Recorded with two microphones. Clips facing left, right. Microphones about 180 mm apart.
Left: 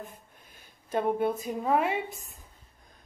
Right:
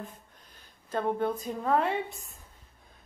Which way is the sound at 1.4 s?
10° left (ahead or behind).